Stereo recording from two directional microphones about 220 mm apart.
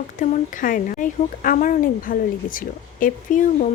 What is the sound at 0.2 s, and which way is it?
Speech, 40° left (ahead or behind).